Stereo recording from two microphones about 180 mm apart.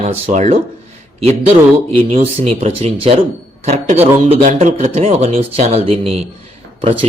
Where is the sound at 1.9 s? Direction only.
35° right (ahead or behind).